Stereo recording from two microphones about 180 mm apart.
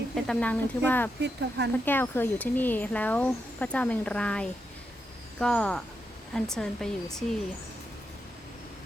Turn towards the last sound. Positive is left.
turn(degrees=5)  # may be behind; listen again after turning